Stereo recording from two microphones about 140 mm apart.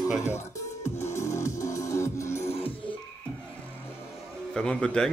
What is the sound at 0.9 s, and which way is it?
Music, 20° left (ahead or behind).